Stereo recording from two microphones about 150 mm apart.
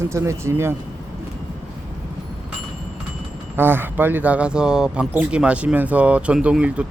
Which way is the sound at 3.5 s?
15° right (ahead or behind).